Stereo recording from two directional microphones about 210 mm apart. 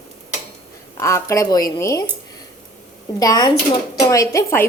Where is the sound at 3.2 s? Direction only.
15° left (ahead or behind).